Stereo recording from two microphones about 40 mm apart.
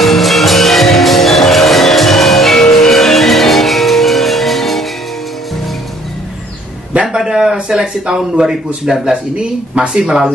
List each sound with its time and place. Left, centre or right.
0.0 s music: centre
7.1 s speech: centre